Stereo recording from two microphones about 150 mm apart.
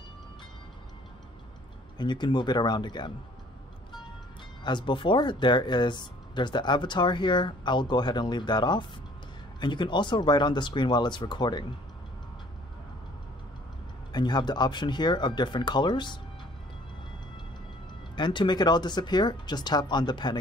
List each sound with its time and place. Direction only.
2.0 s speech: 30° left (ahead or behind)
4.6 s speech: 30° left (ahead or behind)
14.1 s speech: 30° left (ahead or behind)
18.1 s speech: 30° left (ahead or behind)